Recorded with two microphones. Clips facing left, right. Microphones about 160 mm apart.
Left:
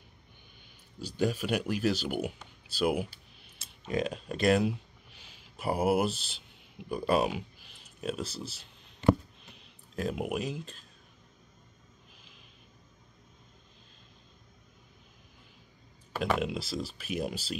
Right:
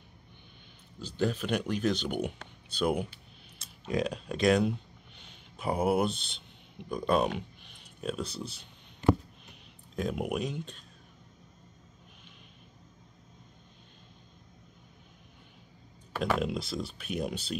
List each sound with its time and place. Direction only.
1.0 s speech: 10° left (ahead or behind)
9.9 s speech: centre (ahead or behind)
16.2 s speech: centre (ahead or behind)